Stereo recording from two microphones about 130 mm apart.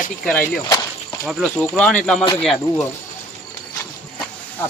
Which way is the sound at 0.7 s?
25° left (ahead or behind).